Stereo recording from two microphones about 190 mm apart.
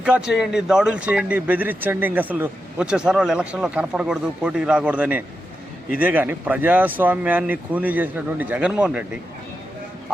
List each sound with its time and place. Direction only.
0.0 s speech: 5° right (ahead or behind)